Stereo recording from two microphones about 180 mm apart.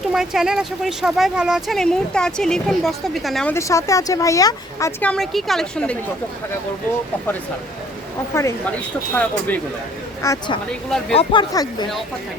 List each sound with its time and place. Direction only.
0.1 s speech: 5° right (ahead or behind)
3.5 s speech: 15° left (ahead or behind)
8.3 s speech: 15° left (ahead or behind)
10.2 s speech: 25° left (ahead or behind)
10.7 s speech: 5° left (ahead or behind)
11.1 s speech: 30° left (ahead or behind)